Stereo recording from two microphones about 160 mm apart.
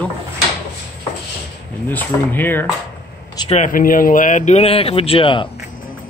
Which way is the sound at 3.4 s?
50° left (ahead or behind).